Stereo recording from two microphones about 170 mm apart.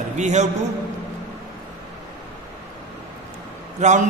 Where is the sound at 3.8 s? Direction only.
45° right (ahead or behind).